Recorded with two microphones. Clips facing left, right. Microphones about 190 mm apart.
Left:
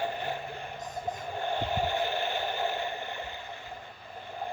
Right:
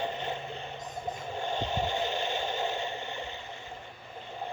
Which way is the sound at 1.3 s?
20° right (ahead or behind).